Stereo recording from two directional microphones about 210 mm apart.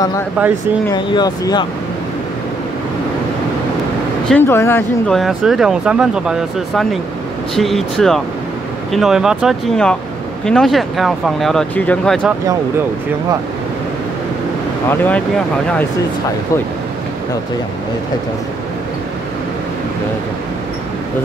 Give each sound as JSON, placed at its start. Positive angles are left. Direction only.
{"t": 0.9, "sound": "speech", "side_deg": 20}
{"t": 4.3, "sound": "speech", "side_deg": 10}
{"t": 14.9, "sound": "speech", "side_deg": 5}